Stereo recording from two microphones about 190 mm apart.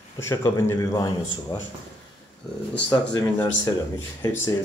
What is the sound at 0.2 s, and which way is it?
Speech, 15° left (ahead or behind).